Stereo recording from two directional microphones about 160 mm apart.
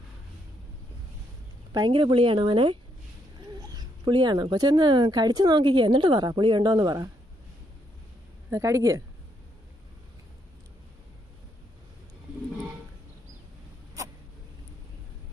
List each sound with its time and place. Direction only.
1.7 s speech: 30° right (ahead or behind)
8.4 s speech: 20° right (ahead or behind)